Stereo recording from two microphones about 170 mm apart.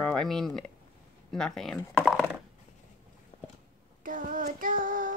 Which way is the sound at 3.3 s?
35° left (ahead or behind).